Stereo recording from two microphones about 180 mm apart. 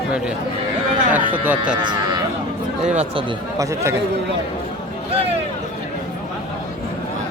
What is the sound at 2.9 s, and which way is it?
Speech, 35° right (ahead or behind).